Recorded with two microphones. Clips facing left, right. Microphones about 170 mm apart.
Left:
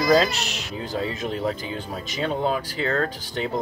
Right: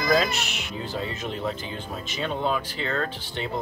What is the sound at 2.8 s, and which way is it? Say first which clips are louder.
Speech: left 6 dB; 40° left (ahead or behind).